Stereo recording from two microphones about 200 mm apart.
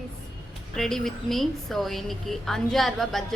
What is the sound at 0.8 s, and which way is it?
A woman's voice, centre (ahead or behind).